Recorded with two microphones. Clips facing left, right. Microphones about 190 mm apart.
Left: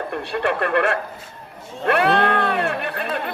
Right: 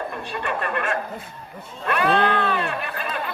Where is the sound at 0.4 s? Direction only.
65° left (ahead or behind).